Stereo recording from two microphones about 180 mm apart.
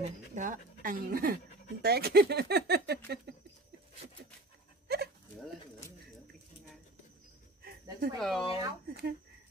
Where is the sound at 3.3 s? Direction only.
65° right (ahead or behind).